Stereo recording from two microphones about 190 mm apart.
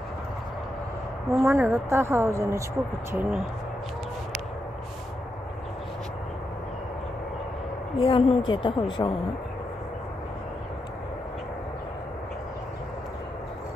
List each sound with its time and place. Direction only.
1.4 s a woman's voice: 15° right (ahead or behind)
8.0 s a woman's voice: 30° left (ahead or behind)